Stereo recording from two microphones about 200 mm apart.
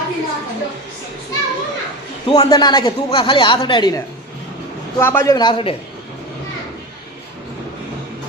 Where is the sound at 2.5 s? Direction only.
20° left (ahead or behind).